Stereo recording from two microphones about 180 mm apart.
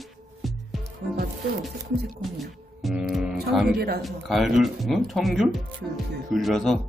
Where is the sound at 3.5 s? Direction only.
Centre (ahead or behind).